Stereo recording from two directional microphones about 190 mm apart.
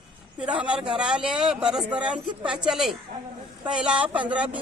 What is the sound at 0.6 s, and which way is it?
A man's voice, 5° right (ahead or behind).